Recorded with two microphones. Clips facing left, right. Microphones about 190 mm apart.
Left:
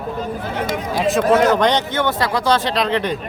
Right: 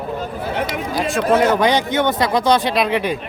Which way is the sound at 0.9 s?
Centre (ahead or behind).